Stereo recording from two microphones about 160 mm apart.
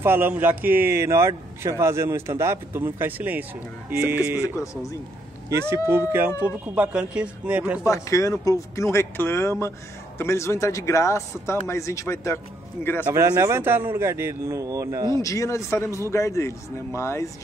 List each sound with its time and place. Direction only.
0.0 s a man's voice: 15° right (ahead or behind)
5.5 s a man's voice: 15° right (ahead or behind)
7.8 s speech: 20° left (ahead or behind)
13.1 s a man's voice: 20° right (ahead or behind)
15.2 s speech: 20° left (ahead or behind)